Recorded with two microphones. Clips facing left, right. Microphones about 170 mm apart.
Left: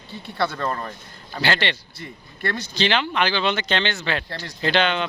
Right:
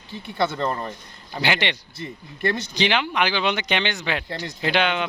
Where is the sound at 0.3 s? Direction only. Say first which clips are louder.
Right 1 dB; 20° right (ahead or behind).